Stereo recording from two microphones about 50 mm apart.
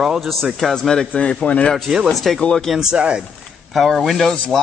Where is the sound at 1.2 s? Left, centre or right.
Left.